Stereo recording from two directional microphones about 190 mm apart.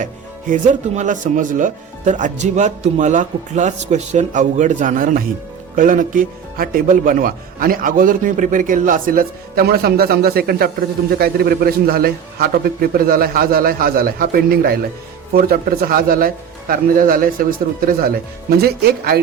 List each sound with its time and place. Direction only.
0.0 s a man's voice: 45° right (ahead or behind)